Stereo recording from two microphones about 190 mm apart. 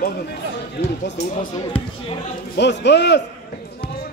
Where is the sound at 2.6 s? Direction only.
65° left (ahead or behind).